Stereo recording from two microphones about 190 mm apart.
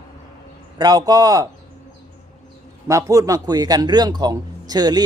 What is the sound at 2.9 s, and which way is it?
Speech, 15° right (ahead or behind).